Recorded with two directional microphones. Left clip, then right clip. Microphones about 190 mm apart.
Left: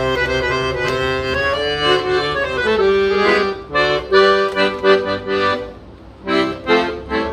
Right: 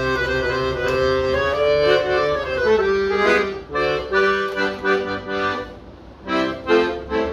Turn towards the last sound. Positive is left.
turn(degrees=20)  # may be behind; listen again after turning